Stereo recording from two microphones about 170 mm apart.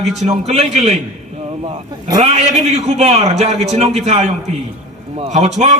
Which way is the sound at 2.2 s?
40° right (ahead or behind).